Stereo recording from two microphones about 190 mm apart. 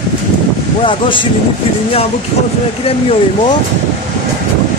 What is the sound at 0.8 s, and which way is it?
Speech, 25° left (ahead or behind).